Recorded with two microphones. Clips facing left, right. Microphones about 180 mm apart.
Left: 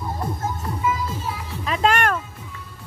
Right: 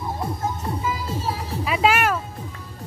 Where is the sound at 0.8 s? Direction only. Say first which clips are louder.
Left 3 dB; 35° right (ahead or behind).